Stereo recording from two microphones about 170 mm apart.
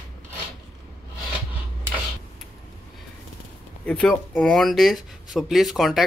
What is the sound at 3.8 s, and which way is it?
Speech, 5° left (ahead or behind).